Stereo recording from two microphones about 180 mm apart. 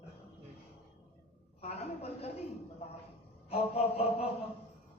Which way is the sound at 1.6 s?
35° left (ahead or behind).